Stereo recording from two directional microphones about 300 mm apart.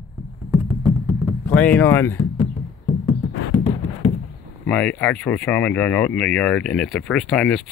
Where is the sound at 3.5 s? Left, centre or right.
Centre.